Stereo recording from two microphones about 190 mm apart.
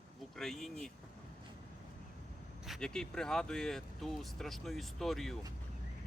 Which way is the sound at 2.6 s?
Centre (ahead or behind).